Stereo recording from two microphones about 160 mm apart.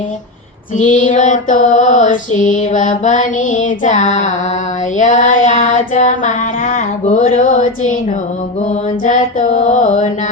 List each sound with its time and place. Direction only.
0.8 s mantra: 55° left (ahead or behind)
9.0 s mantra: 55° left (ahead or behind)